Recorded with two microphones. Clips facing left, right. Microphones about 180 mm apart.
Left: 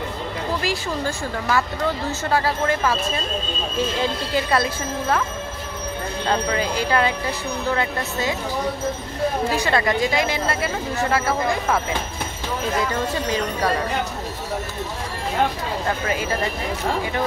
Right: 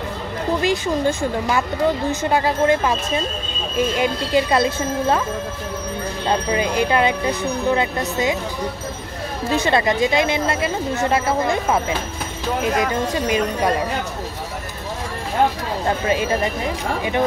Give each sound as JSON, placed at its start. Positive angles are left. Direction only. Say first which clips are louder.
{"t": 0.6, "sound": "a woman's voice", "louder": "right 5 dB", "side_deg": -20}
{"t": 6.2, "sound": "a woman's voice", "louder": "right 2 dB", "side_deg": -20}
{"t": 9.5, "sound": "a woman's voice", "louder": "right 2 dB", "side_deg": -25}
{"t": 13.1, "sound": "speech", "louder": "right 3 dB", "side_deg": -15}